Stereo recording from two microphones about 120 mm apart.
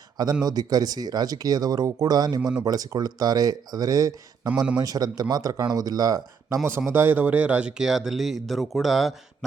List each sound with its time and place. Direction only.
0.4 s speech: 30° right (ahead or behind)
6.7 s speech: 20° right (ahead or behind); by 9.1 s centre (ahead or behind)